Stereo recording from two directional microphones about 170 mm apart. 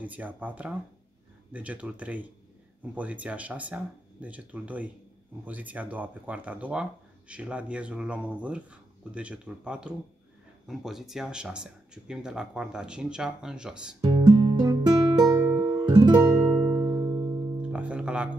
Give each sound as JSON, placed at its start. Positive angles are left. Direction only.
{"t": 0.0, "sound": "speech", "side_deg": -10}
{"t": 14.0, "sound": "music", "side_deg": -30}
{"t": 16.5, "sound": "music", "side_deg": -5}
{"t": 17.6, "sound": "music", "side_deg": -5}